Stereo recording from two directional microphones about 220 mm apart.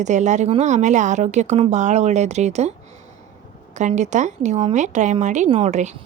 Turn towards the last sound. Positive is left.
turn(degrees=-30)  # may be behind; listen again after turning